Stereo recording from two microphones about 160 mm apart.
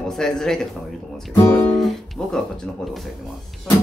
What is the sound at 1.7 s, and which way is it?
Speech, centre (ahead or behind).